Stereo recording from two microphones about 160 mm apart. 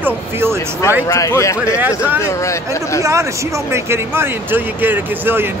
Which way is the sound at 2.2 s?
20° left (ahead or behind).